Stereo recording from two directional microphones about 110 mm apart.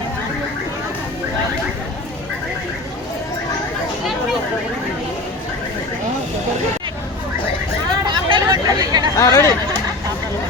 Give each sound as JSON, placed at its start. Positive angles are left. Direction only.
{"t": 8.0, "sound": "hubbub", "side_deg": -45}
{"t": 9.1, "sound": "chatter", "side_deg": 30}